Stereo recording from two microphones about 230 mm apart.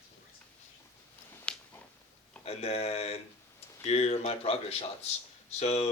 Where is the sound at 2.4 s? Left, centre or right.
Left.